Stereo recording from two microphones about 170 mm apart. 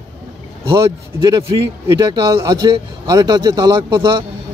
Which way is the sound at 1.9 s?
20° right (ahead or behind).